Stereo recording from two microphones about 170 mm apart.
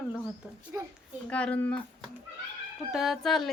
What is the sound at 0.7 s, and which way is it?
Speech, 15° right (ahead or behind).